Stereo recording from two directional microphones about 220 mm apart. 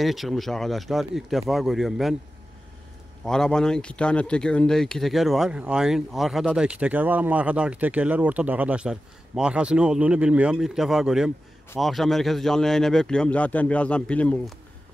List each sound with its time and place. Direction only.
0.0 s speech: centre (ahead or behind)
3.3 s speech: 5° left (ahead or behind)